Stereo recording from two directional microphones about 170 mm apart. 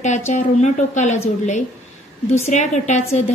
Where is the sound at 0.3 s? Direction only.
45° left (ahead or behind).